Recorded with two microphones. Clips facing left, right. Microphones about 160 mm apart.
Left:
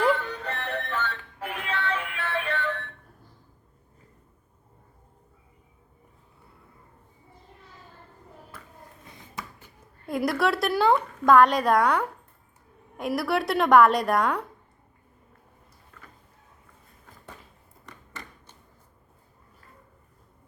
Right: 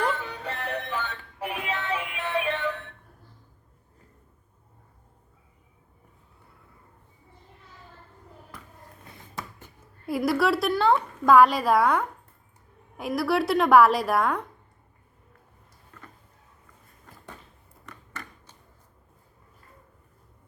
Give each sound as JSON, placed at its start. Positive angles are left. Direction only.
{"t": 0.4, "sound": "music", "side_deg": -10}
{"t": 10.1, "sound": "a woman's voice", "side_deg": 0}